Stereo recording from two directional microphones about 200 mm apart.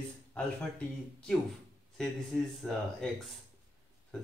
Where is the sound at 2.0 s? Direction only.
Centre (ahead or behind).